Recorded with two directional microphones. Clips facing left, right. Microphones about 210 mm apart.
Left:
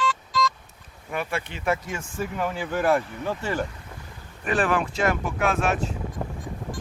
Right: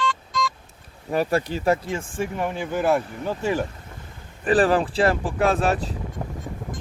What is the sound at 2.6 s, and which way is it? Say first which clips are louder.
Speech: right 1 dB; centre (ahead or behind).